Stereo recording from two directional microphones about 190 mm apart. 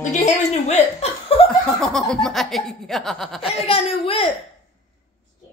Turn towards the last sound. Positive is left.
turn(degrees=30)  # may be behind; listen again after turning